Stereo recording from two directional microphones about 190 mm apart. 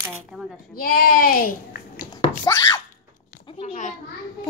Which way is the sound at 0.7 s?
50° left (ahead or behind).